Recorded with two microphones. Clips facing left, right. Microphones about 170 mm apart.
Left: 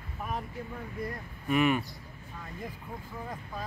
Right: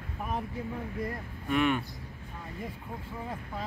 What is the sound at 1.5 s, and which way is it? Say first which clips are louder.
Speech: left 1 dB; 5° left (ahead or behind).